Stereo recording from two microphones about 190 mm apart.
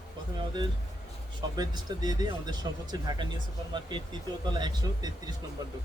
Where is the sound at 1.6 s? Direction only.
20° right (ahead or behind).